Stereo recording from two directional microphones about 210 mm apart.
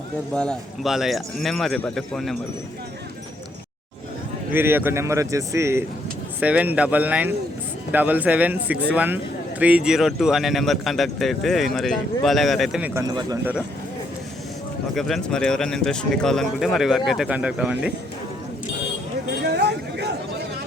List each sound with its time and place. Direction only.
0.3 s a man's voice: centre (ahead or behind)
4.5 s a man's voice: 10° right (ahead or behind)
14.9 s a man's voice: centre (ahead or behind)
19.3 s a sound: 50° right (ahead or behind)